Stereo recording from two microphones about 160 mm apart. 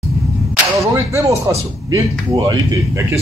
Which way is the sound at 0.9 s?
20° right (ahead or behind).